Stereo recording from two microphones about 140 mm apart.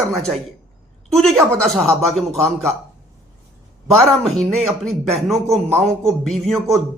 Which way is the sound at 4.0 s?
Centre (ahead or behind).